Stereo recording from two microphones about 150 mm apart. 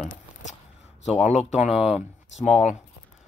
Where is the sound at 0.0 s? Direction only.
50° left (ahead or behind).